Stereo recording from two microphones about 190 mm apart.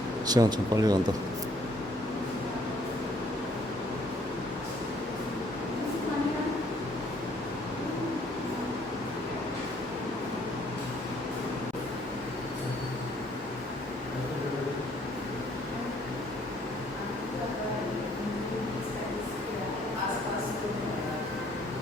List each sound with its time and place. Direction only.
0.3 s speech: 20° right (ahead or behind)